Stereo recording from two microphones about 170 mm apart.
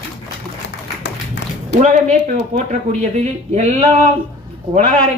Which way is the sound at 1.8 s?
45° right (ahead or behind).